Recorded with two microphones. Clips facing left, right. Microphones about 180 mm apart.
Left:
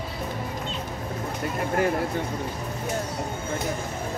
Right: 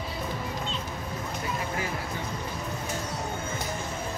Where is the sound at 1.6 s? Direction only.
55° left (ahead or behind).